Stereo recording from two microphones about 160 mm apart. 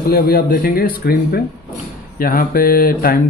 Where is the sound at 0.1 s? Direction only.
70° left (ahead or behind).